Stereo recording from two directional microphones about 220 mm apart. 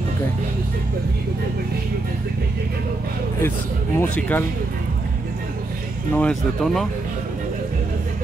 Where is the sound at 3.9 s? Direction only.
10° left (ahead or behind).